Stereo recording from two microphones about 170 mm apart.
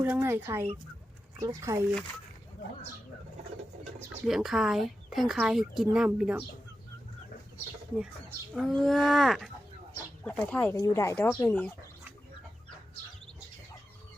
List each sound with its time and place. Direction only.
0.0 s speech: 15° right (ahead or behind)
4.3 s speech: 5° right (ahead or behind)
8.5 s a woman's voice: centre (ahead or behind)